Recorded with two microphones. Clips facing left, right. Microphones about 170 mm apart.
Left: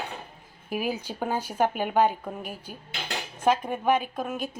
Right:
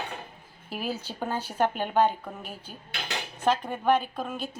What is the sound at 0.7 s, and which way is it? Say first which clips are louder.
Speech: left 4 dB; 15° left (ahead or behind).